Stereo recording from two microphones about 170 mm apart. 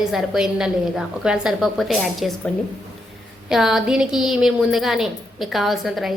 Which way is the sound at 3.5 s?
Centre (ahead or behind).